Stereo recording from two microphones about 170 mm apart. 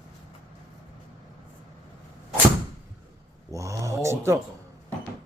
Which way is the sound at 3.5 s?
20° right (ahead or behind).